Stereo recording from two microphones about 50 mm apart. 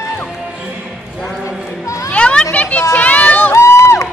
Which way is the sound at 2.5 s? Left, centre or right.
Left.